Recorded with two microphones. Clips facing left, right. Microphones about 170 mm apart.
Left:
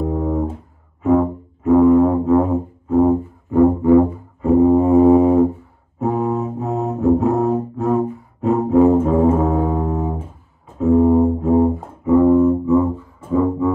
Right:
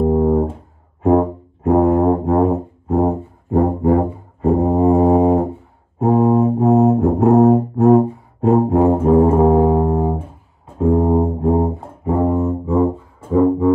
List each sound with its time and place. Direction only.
0.0 s a sound: 50° right (ahead or behind)
1.0 s music: 40° right (ahead or behind)
10.8 s brass instrument: 35° right (ahead or behind)
12.2 s music: 30° right (ahead or behind)